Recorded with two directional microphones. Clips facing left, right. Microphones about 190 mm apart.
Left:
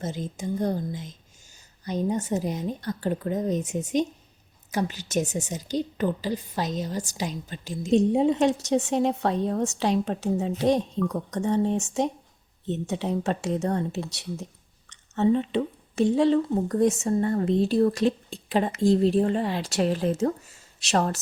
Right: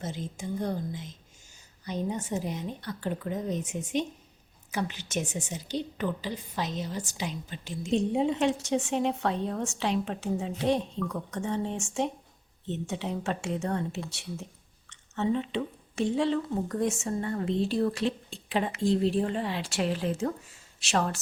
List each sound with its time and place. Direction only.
0.0 s a woman's voice: 40° left (ahead or behind)